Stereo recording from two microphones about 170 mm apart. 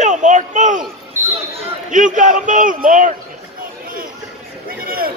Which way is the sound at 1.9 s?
50° right (ahead or behind).